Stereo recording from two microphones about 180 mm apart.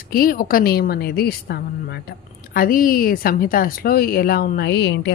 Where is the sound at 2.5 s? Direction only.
50° left (ahead or behind).